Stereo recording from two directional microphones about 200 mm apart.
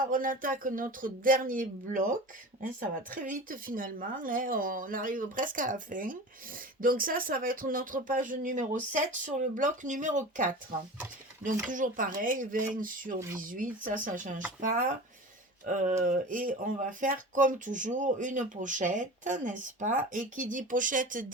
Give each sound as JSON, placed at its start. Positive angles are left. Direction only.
{"t": 0.1, "sound": "speech", "side_deg": -45}
{"t": 3.1, "sound": "speech", "side_deg": -40}
{"t": 11.7, "sound": "speech", "side_deg": -40}
{"t": 13.1, "sound": "speech", "side_deg": -15}
{"t": 13.4, "sound": "speech", "side_deg": -40}
{"t": 15.6, "sound": "speech", "side_deg": -40}